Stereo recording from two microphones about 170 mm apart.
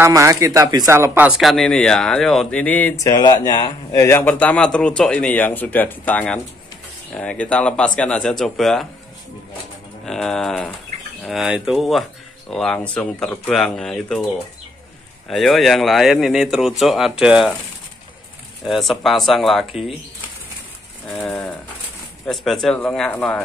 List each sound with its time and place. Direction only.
0.0 s speech: 20° right (ahead or behind); by 3.1 s 10° left (ahead or behind)
3.1 s speech: 25° left (ahead or behind); by 8.8 s centre (ahead or behind)
10.0 s speech: centre (ahead or behind)
15.2 s speech: centre (ahead or behind)
18.7 s speech: centre (ahead or behind)
22.2 s speech: centre (ahead or behind)